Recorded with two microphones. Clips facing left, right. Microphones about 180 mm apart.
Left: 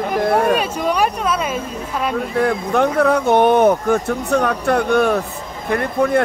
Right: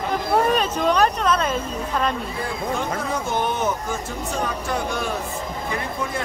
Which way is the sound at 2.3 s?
65° left (ahead or behind).